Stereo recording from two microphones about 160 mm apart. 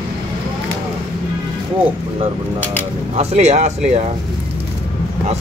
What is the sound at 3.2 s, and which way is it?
Speech, 45° right (ahead or behind).